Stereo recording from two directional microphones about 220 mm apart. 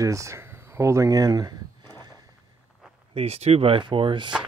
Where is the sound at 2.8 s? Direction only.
Centre (ahead or behind).